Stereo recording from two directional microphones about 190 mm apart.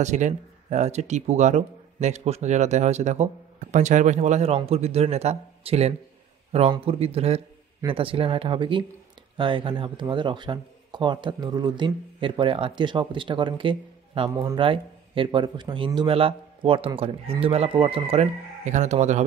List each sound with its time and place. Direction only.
0.0 s speech: 40° right (ahead or behind)